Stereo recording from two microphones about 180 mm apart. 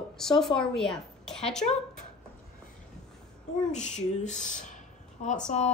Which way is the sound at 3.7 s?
40° left (ahead or behind).